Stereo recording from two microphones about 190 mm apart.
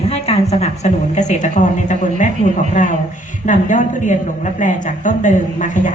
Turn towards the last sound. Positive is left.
turn(degrees=40)  # may be behind; listen again after turning